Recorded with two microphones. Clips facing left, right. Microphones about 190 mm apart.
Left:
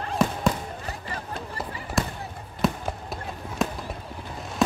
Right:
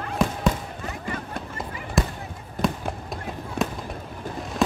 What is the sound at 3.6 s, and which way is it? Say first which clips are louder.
Fireworks: even; centre (ahead or behind).